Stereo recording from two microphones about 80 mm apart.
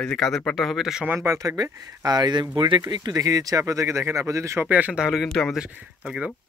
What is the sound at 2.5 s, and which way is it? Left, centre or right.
Speech, right.